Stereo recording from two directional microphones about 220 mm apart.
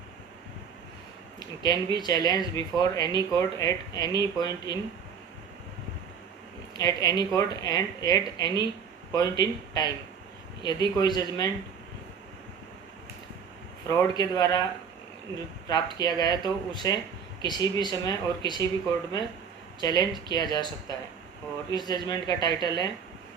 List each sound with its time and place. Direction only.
1.4 s speech: 20° left (ahead or behind)
6.7 s speech: 15° left (ahead or behind)
13.8 s speech: 15° left (ahead or behind)
15.6 s speech: 20° left (ahead or behind)
19.8 s speech: 20° left (ahead or behind)